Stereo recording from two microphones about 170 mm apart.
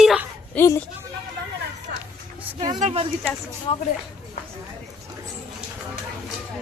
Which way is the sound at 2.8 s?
35° right (ahead or behind).